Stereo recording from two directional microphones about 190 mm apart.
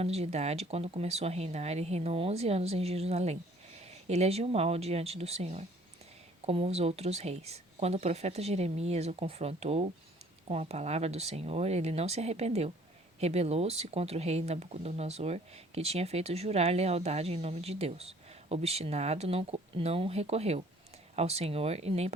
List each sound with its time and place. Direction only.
0.0 s speech: 35° right (ahead or behind)